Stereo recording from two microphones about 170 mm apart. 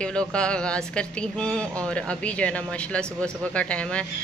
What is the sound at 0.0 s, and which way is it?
Speech, 5° left (ahead or behind).